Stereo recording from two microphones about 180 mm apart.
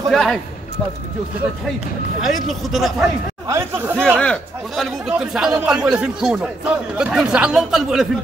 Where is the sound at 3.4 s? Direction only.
15° right (ahead or behind).